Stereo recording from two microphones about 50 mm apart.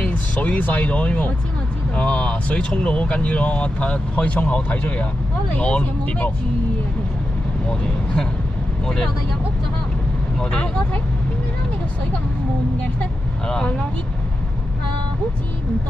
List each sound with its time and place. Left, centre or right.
0.1 s speech: left
8.8 s speech: centre
10.4 s speech: left
13.5 s speech: centre